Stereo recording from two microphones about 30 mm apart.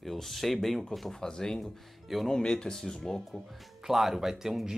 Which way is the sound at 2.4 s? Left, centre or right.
Left.